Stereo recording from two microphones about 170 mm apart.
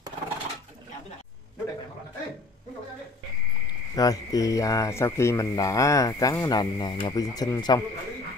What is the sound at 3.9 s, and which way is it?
Speech, 20° left (ahead or behind).